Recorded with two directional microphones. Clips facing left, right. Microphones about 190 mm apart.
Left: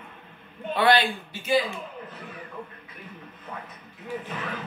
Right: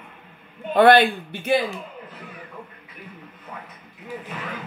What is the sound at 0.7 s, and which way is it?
Speech, 50° right (ahead or behind).